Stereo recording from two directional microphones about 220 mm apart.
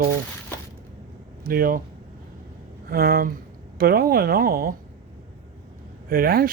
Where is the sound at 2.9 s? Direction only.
45° right (ahead or behind).